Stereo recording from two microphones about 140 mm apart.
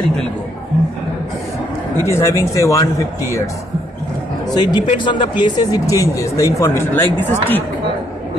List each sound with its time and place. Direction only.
2.0 s speech: 20° left (ahead or behind)
4.6 s speech: 30° left (ahead or behind); by 7.6 s 15° left (ahead or behind)